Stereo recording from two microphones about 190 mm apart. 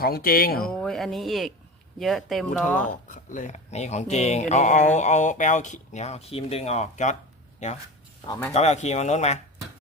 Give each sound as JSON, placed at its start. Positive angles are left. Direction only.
{"t": 0.0, "sound": "speech", "side_deg": 50}
{"t": 0.7, "sound": "speech", "side_deg": 5}
{"t": 3.1, "sound": "speech", "side_deg": 40}
{"t": 8.3, "sound": "speech", "side_deg": 15}
{"t": 8.5, "sound": "speech", "side_deg": 35}